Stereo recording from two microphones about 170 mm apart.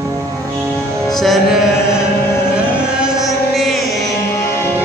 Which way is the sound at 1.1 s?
Centre (ahead or behind).